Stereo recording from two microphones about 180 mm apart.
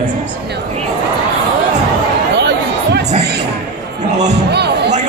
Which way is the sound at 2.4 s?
70° right (ahead or behind).